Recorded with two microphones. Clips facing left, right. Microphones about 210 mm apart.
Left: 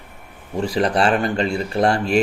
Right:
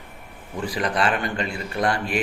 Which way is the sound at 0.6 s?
30° left (ahead or behind).